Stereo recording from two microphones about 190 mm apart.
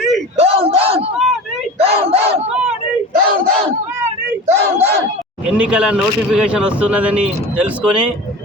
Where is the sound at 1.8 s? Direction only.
30° right (ahead or behind).